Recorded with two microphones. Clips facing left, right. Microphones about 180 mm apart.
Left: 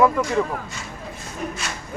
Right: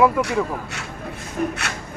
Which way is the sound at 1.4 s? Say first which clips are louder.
Right 7 dB; 55° right (ahead or behind).